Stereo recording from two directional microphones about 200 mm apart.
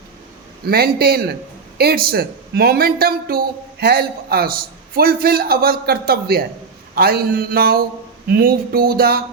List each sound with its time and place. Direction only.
0.7 s a man's voice: 50° right (ahead or behind)